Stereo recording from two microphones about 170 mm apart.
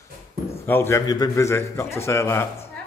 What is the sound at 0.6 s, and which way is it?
A man's voice, 15° left (ahead or behind).